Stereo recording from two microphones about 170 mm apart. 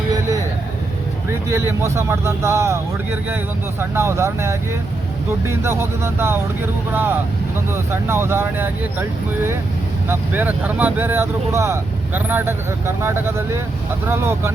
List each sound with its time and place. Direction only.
1.5 s speech: 15° right (ahead or behind)